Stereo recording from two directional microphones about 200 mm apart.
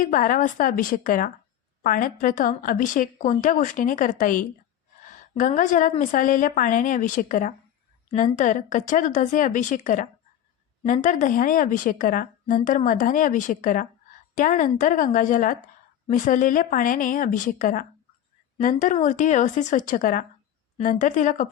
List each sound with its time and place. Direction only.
0.0 s a woman's voice: 40° left (ahead or behind)